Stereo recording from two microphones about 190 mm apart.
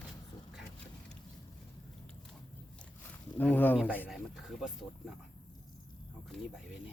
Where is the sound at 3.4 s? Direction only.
10° left (ahead or behind).